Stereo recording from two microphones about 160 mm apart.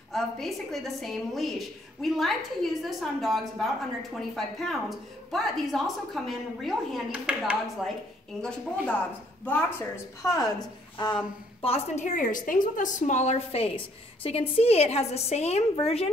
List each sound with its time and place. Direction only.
0.1 s a woman's voice: centre (ahead or behind); by 10.5 s 20° left (ahead or behind)
11.6 s a woman's voice: 40° left (ahead or behind)